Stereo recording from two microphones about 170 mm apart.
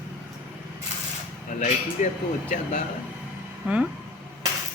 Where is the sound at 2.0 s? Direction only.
45° left (ahead or behind).